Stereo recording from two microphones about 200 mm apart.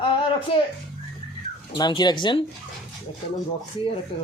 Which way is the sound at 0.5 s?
25° left (ahead or behind).